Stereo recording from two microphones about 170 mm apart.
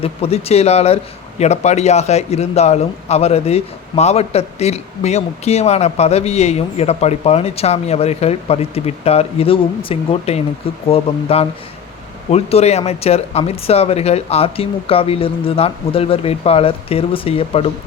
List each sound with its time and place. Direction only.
0.0 s a man's voice: 35° left (ahead or behind)